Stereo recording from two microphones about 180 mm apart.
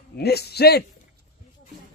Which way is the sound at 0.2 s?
65° left (ahead or behind).